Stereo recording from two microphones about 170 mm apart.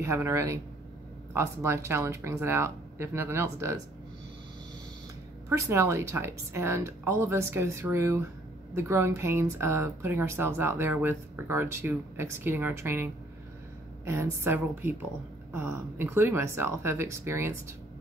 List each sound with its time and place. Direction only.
0.0 s a woman's voice: 15° right (ahead or behind)
5.5 s a woman's voice: 15° right (ahead or behind)